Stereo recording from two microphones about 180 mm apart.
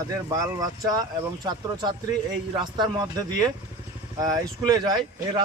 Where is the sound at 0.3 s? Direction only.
20° right (ahead or behind).